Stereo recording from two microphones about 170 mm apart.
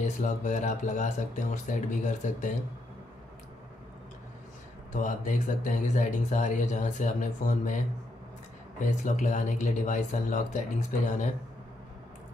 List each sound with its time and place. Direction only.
0.0 s speech: 45° left (ahead or behind)
4.9 s speech: 50° left (ahead or behind)